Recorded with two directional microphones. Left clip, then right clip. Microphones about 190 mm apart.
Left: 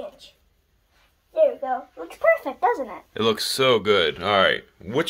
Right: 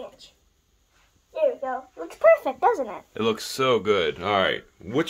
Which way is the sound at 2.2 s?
60° right (ahead or behind).